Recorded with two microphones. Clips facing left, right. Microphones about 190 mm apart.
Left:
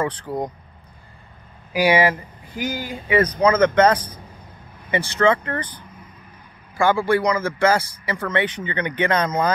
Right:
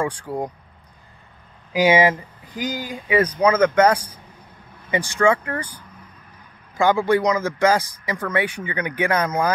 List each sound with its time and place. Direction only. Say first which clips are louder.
0.0 s speech: even; 10° right (ahead or behind)
1.7 s speech: right 1 dB; 20° right (ahead or behind)
6.8 s speech: right 1 dB; 15° right (ahead or behind)